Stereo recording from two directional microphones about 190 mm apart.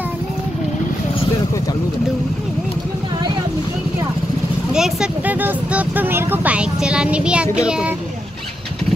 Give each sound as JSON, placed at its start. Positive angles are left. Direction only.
{"t": 4.7, "sound": "vehicle", "side_deg": -5}
{"t": 7.5, "sound": "a child's voice", "side_deg": -5}